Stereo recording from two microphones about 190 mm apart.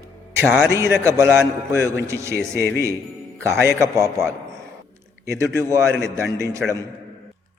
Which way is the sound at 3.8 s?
15° right (ahead or behind).